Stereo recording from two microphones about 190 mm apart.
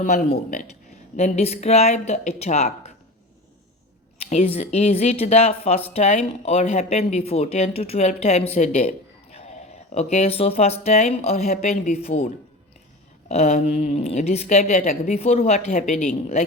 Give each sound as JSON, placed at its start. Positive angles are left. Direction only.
{"t": 0.0, "sound": "a man's voice", "side_deg": 45}
{"t": 1.1, "sound": "speech", "side_deg": 35}
{"t": 4.2, "sound": "speech", "side_deg": 35}